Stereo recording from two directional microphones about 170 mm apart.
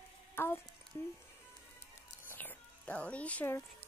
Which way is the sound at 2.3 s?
10° left (ahead or behind).